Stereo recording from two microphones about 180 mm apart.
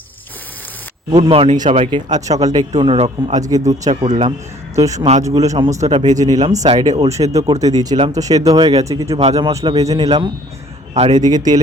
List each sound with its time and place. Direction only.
1.1 s speech: 35° right (ahead or behind)
3.3 s speech: 20° right (ahead or behind)
3.8 s speech: 40° right (ahead or behind)
4.2 s speech: 20° right (ahead or behind)
4.9 s speech: 40° right (ahead or behind)
5.2 s a man's voice: 20° right (ahead or behind)
11.1 s speech: 20° right (ahead or behind)